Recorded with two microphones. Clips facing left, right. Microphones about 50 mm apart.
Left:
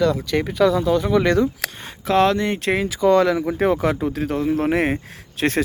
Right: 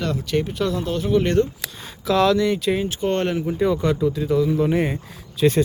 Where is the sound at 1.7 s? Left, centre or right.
Left.